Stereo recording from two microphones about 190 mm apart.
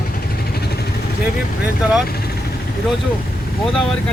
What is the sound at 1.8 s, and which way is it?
Speech, 5° right (ahead or behind).